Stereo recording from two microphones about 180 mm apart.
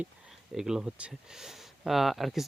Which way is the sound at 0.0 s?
Centre (ahead or behind).